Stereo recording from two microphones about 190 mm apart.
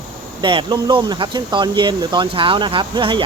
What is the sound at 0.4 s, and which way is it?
Speech, 25° right (ahead or behind).